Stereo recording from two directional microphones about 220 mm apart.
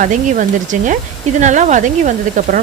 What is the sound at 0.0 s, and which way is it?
Speech, 35° right (ahead or behind).